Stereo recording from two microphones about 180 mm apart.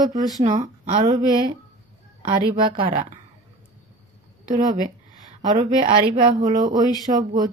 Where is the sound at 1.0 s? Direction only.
20° right (ahead or behind).